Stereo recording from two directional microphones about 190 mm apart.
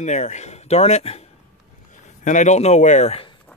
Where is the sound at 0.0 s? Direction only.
40° left (ahead or behind).